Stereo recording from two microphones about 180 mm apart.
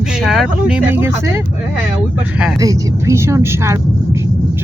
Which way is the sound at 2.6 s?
20° right (ahead or behind).